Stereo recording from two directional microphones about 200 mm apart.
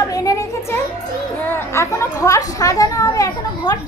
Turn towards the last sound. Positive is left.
turn(degrees=15)  # may be behind; listen again after turning